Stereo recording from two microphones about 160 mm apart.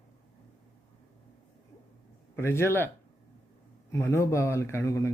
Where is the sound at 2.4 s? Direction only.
15° left (ahead or behind).